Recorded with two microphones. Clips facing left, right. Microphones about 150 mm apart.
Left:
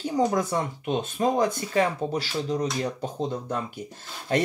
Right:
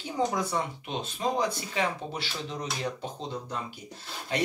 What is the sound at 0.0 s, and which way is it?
Speech, 45° left (ahead or behind).